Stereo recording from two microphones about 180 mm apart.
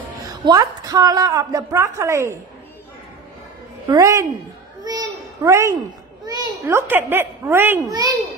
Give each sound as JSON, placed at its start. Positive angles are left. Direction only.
{"t": 0.2, "sound": "a woman's voice", "side_deg": -20}
{"t": 3.8, "sound": "a woman's voice", "side_deg": -20}
{"t": 4.8, "sound": "a sound", "side_deg": -20}
{"t": 6.6, "sound": "a child's voice", "side_deg": -10}